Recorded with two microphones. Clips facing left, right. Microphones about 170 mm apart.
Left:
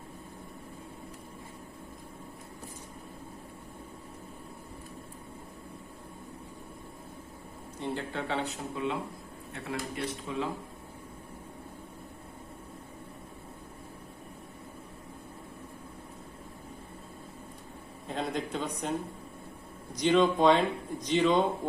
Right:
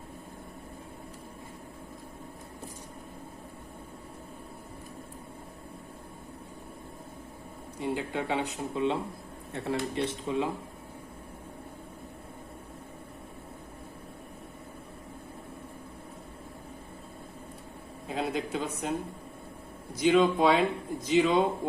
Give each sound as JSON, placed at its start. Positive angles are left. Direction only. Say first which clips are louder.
{"t": 7.8, "sound": "speech", "louder": "right 3 dB", "side_deg": -10}
{"t": 18.1, "sound": "a man's voice", "louder": "right 2 dB", "side_deg": -5}
{"t": 20.0, "sound": "a man's voice", "louder": "right 1 dB", "side_deg": -5}